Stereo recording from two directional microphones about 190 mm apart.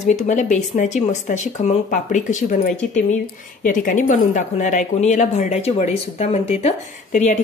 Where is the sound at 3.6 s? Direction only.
40° left (ahead or behind).